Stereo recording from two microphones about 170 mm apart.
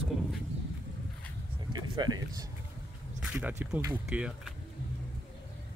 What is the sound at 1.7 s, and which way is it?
Speech, 25° right (ahead or behind).